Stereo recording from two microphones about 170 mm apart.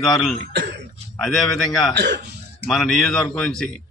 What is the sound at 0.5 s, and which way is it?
Cough, 85° right.